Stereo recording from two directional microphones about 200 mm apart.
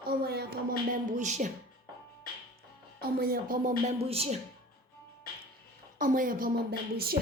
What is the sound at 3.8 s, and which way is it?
Speech, 30° right (ahead or behind).